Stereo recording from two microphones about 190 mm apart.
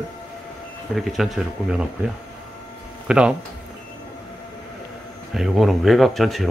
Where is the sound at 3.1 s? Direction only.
5° right (ahead or behind).